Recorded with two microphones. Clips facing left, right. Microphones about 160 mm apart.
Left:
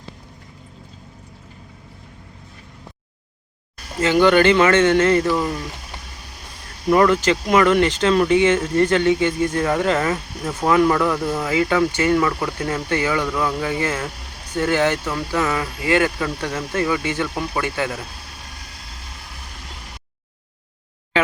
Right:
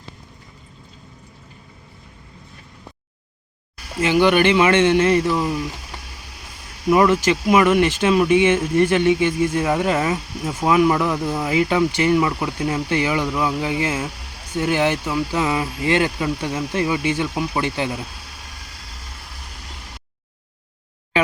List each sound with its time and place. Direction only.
4.0 s speech: 15° right (ahead or behind)
6.8 s speech: 10° right (ahead or behind)